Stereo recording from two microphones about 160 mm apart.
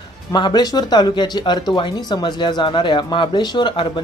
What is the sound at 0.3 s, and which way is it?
Speech, 25° left (ahead or behind).